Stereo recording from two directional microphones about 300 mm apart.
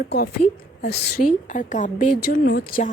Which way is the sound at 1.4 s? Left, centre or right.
Left.